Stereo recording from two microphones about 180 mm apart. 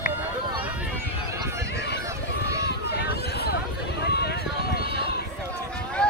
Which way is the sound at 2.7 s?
65° left (ahead or behind).